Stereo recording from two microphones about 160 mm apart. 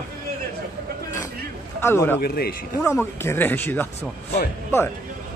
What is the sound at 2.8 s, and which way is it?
Speech, 15° left (ahead or behind).